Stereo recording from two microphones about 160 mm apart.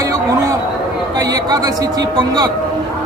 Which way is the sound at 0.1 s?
20° right (ahead or behind).